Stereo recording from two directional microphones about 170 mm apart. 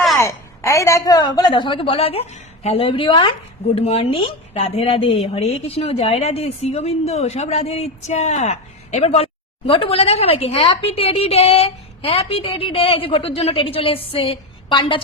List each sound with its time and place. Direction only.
0.2 s a woman's voice: 20° left (ahead or behind)